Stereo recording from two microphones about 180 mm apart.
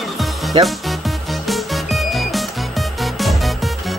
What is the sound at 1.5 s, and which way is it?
Music, centre (ahead or behind).